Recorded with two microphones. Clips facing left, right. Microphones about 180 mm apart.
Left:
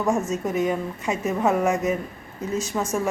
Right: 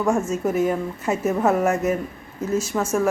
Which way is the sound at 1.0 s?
15° left (ahead or behind).